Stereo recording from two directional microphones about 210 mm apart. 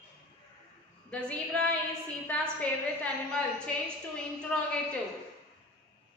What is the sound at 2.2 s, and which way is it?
A woman's voice, 5° left (ahead or behind).